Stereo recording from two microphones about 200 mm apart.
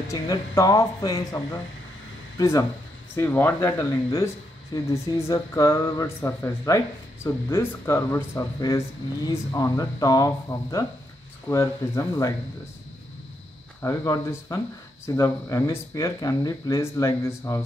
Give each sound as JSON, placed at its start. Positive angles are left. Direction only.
{"t": 0.1, "sound": "speech", "side_deg": 15}
{"t": 13.8, "sound": "speech", "side_deg": 15}